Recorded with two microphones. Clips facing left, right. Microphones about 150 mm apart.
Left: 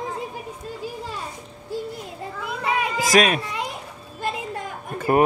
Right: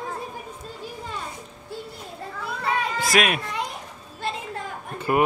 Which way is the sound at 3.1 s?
35° left (ahead or behind).